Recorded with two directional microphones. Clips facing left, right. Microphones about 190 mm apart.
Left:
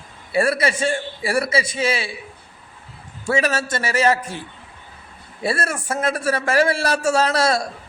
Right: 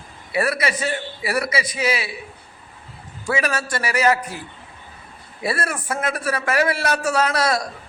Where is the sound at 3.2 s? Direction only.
25° left (ahead or behind).